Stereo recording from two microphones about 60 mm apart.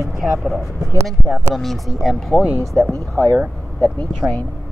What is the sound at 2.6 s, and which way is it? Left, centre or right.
Speech, right.